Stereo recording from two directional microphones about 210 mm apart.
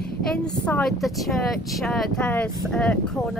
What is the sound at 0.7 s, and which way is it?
Speech, 5° left (ahead or behind).